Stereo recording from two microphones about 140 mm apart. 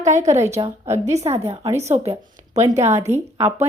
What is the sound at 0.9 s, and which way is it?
A woman's voice, 20° right (ahead or behind).